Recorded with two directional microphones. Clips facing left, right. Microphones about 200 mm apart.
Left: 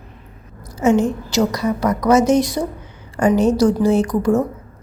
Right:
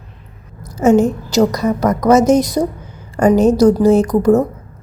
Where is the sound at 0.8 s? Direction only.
40° right (ahead or behind).